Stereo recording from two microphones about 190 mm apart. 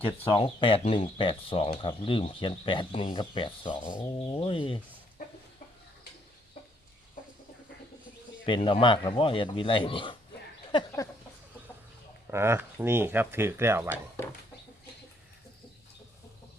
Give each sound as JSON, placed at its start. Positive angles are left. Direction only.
{"t": 0.0, "sound": "speech", "side_deg": 25}
{"t": 8.4, "sound": "speech", "side_deg": 25}
{"t": 10.7, "sound": "a sound", "side_deg": 20}
{"t": 12.3, "sound": "speech", "side_deg": -15}